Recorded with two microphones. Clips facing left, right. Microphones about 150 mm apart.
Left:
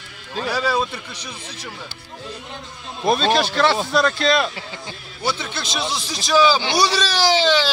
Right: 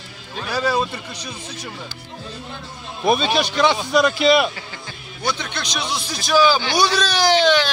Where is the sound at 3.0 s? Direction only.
5° right (ahead or behind).